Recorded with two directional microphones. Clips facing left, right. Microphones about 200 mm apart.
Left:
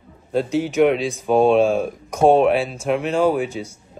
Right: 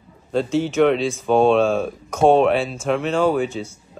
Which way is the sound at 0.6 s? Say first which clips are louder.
Even; 5° left (ahead or behind).